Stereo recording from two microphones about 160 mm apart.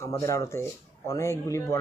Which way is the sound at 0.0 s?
20° left (ahead or behind).